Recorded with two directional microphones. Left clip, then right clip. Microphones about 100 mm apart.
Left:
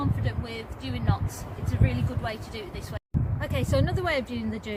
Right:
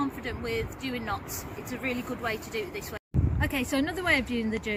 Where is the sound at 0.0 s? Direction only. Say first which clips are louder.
Right 1 dB; 10° left (ahead or behind).